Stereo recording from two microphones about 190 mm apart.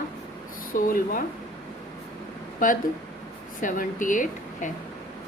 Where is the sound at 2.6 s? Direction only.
45° left (ahead or behind).